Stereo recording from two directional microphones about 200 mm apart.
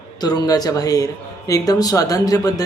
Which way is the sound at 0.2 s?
20° left (ahead or behind).